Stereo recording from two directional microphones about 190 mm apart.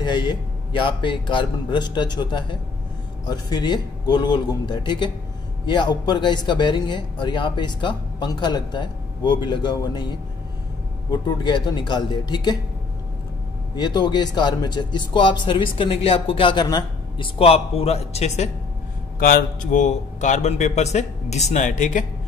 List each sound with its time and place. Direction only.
0.0 s speech: 25° left (ahead or behind)
13.7 s speech: 20° left (ahead or behind)
19.1 s a man's voice: 50° left (ahead or behind)